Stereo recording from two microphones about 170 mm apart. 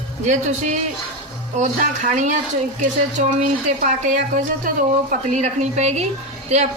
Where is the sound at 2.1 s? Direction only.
45° right (ahead or behind).